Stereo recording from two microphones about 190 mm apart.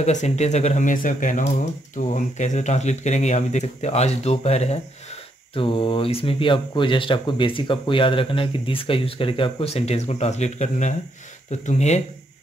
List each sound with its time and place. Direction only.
0.0 s speech: 35° left (ahead or behind)